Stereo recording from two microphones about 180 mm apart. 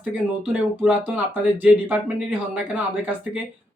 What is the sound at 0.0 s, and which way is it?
Speech, 10° right (ahead or behind).